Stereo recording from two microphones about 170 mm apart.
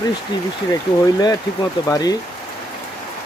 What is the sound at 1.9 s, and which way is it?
Speech, 20° left (ahead or behind).